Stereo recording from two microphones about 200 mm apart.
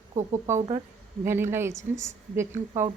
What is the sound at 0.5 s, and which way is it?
Speech, 25° right (ahead or behind).